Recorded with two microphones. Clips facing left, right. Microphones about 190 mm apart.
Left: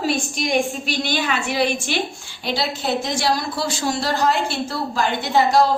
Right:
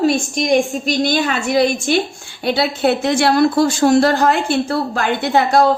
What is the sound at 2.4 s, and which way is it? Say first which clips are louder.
A woman's voice: right 7 dB; 60° right (ahead or behind).